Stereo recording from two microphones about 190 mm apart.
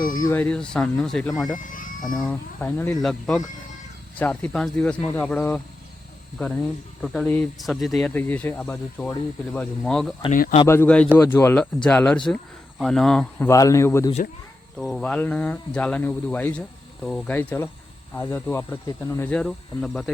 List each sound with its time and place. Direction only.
0.0 s speech: 20° left (ahead or behind)
0.4 s speech: 5° left (ahead or behind)
1.5 s sheep: 45° left (ahead or behind)
2.2 s speech: 10° left (ahead or behind)
7.0 s speech: centre (ahead or behind)
13.5 s speech: 15° left (ahead or behind)
14.8 s speech: centre (ahead or behind)